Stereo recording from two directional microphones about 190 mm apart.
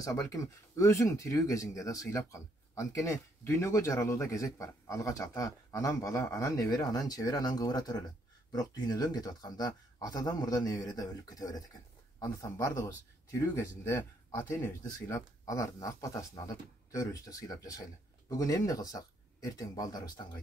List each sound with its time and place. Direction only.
0.0 s speech: 15° left (ahead or behind)